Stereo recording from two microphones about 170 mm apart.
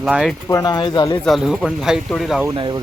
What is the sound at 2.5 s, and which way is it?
Speech, 30° right (ahead or behind).